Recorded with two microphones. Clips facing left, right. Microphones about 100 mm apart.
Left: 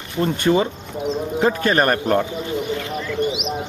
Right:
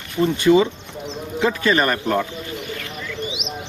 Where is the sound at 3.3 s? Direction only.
50° left (ahead or behind).